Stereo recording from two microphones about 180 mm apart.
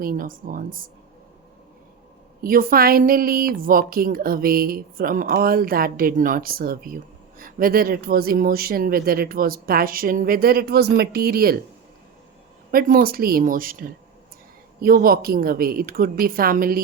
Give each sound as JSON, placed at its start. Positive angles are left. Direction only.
{"t": 0.0, "sound": "speech", "side_deg": -50}
{"t": 2.4, "sound": "a woman's voice", "side_deg": -55}
{"t": 12.7, "sound": "a woman's voice", "side_deg": -55}